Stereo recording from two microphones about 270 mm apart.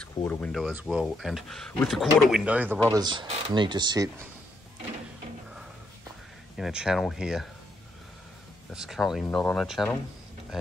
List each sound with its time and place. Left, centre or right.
0.0 s speech: centre
6.5 s speech: centre
8.7 s speech: centre